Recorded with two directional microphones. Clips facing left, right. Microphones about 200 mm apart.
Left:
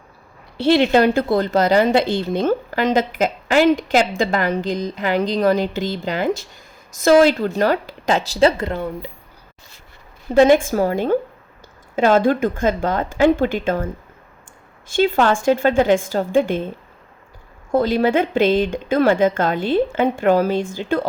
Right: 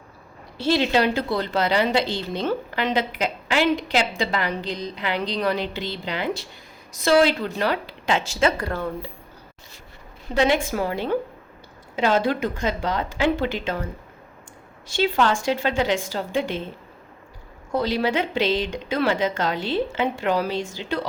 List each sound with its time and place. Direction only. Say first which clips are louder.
0.5 s a woman's voice: left 6 dB; 65° left (ahead or behind); by 9.0 s 20° left (ahead or behind)
10.3 s a woman's voice: left 8 dB; 50° left (ahead or behind)
17.7 s a woman's voice: left 6 dB; 50° left (ahead or behind)